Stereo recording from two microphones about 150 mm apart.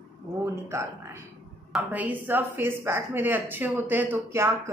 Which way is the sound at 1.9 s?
10° right (ahead or behind).